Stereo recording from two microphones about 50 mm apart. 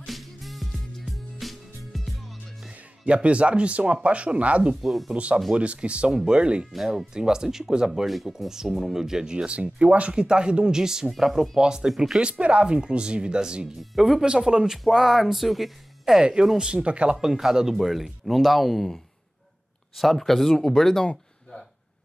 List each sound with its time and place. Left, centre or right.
0.0 s music: centre
3.1 s speech: right
4.8 s speech: centre
5.1 s speech: right
13.7 s speech: centre
14.2 s speech: centre
16.2 s speech: centre
17.3 s speech: centre
20.0 s speech: centre